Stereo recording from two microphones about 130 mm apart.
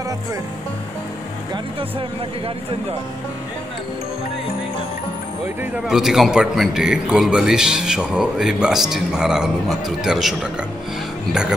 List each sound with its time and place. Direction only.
1.5 s speech: 45° right (ahead or behind)
5.9 s a man's voice: 5° right (ahead or behind)